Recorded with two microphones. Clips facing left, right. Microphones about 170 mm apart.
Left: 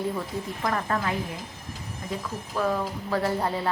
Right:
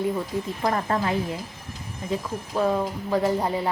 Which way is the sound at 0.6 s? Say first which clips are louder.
Right 3 dB; 30° right (ahead or behind).